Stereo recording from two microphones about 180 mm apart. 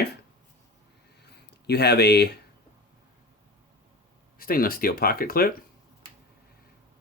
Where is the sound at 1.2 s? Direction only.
65° left (ahead or behind).